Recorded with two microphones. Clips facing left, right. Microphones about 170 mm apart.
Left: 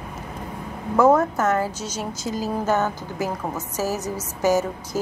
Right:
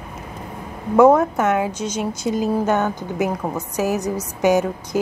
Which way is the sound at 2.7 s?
5° left (ahead or behind).